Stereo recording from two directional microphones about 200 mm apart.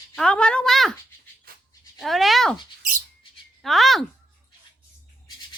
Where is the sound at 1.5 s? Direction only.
45° right (ahead or behind).